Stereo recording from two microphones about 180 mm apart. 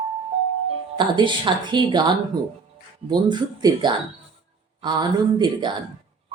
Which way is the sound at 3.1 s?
25° right (ahead or behind).